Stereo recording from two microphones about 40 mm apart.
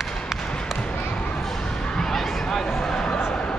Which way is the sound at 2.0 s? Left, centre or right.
Centre.